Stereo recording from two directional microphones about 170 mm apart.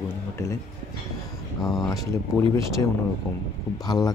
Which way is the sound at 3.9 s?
20° left (ahead or behind).